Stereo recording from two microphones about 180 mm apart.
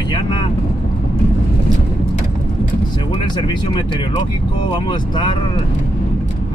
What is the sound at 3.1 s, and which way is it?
Speech, 25° left (ahead or behind).